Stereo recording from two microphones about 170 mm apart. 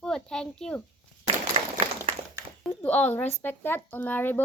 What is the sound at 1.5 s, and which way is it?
Applause, 30° right (ahead or behind).